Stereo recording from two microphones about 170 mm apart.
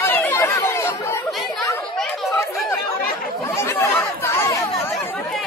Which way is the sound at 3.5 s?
15° left (ahead or behind).